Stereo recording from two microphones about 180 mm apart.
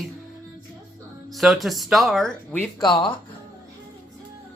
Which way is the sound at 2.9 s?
25° left (ahead or behind).